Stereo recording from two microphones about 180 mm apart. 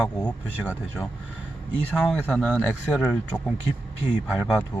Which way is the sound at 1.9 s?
5° left (ahead or behind).